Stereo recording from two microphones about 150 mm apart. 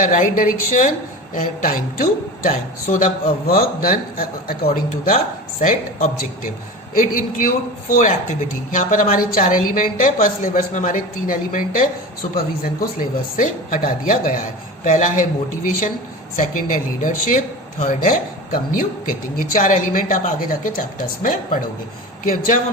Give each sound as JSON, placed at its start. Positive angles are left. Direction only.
{"t": 0.0, "sound": "speech", "side_deg": 60}
{"t": 12.2, "sound": "speech", "side_deg": 40}
{"t": 12.6, "sound": "speech", "side_deg": 70}
{"t": 16.3, "sound": "speech", "side_deg": 65}